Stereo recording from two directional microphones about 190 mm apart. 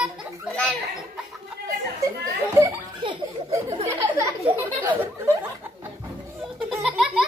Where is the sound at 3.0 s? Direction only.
25° right (ahead or behind).